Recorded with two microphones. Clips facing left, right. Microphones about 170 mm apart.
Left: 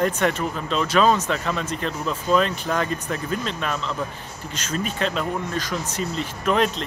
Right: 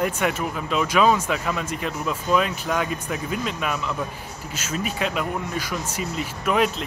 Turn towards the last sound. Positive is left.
turn(degrees=-10)  # may be behind; listen again after turning